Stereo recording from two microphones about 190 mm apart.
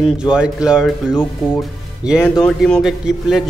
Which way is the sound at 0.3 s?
5° right (ahead or behind).